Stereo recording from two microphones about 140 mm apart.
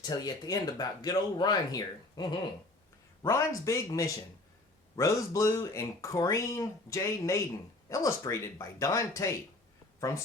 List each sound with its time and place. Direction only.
0.0 s speech: 30° left (ahead or behind)